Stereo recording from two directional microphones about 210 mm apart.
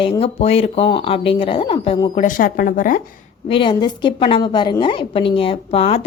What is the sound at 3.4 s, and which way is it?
A woman's voice, 25° left (ahead or behind).